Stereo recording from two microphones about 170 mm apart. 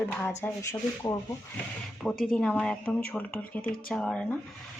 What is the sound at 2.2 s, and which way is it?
A woman's voice, 5° left (ahead or behind).